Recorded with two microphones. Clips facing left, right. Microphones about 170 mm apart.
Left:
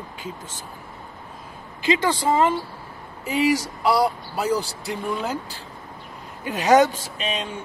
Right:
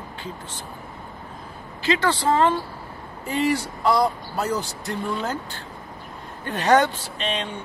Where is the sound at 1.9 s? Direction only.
10° left (ahead or behind).